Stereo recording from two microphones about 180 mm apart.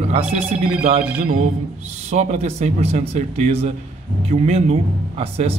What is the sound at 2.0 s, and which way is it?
A man's voice, 40° right (ahead or behind).